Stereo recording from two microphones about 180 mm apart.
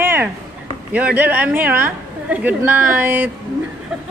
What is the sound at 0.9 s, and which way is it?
Speech, 10° right (ahead or behind).